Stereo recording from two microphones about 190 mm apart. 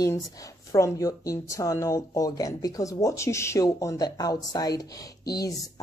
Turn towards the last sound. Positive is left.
turn(degrees=20)  # may be behind; listen again after turning